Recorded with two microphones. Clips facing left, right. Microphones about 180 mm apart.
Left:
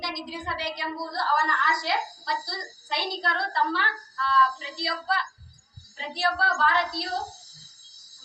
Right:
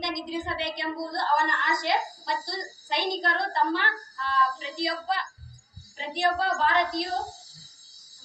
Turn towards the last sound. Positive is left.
turn(degrees=-20)  # may be behind; listen again after turning